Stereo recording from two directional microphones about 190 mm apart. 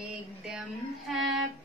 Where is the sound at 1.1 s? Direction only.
Centre (ahead or behind).